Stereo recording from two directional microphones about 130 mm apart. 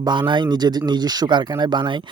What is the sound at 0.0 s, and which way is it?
Speech, 35° right (ahead or behind).